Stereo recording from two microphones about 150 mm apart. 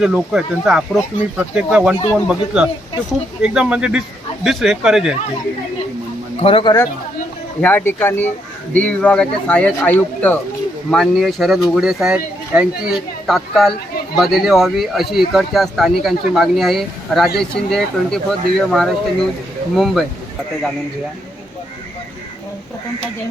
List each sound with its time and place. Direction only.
0.0 s speech: 5° right (ahead or behind)
6.4 s speech: 35° left (ahead or behind)
7.6 s speech: 10° left (ahead or behind)
10.9 s speech: centre (ahead or behind)